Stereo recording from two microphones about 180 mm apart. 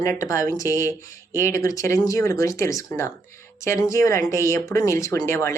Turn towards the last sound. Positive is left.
turn(degrees=15)  # may be behind; listen again after turning